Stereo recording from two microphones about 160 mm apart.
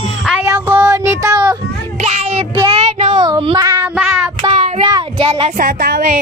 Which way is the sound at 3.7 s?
15° right (ahead or behind).